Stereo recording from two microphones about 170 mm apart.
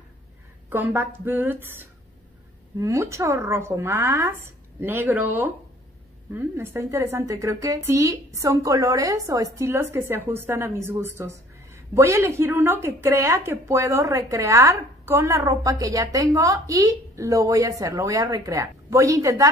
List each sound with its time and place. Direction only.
0.7 s a woman's voice: 10° right (ahead or behind)